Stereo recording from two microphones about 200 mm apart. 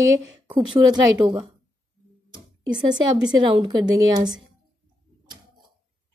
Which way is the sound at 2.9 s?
25° right (ahead or behind).